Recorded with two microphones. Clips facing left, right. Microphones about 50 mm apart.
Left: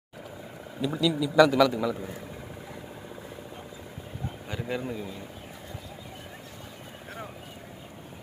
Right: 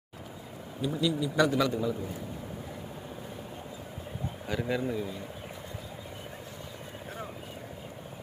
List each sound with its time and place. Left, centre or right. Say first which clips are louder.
0.7 s a man's voice: left 3 dB; left
4.5 s speech: right 2 dB; centre